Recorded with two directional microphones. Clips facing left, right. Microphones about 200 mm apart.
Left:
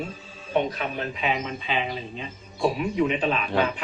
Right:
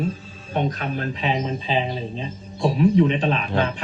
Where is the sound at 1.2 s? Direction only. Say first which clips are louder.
Right 2 dB; 35° right (ahead or behind).